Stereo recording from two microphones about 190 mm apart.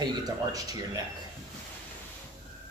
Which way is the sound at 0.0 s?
20° right (ahead or behind).